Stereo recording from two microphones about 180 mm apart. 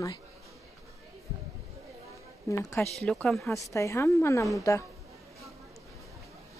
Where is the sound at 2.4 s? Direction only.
15° left (ahead or behind).